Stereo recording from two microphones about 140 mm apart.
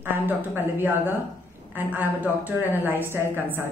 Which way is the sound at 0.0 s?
15° right (ahead or behind).